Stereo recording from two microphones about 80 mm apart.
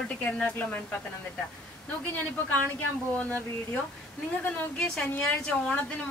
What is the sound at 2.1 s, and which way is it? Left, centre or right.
A woman's voice, left.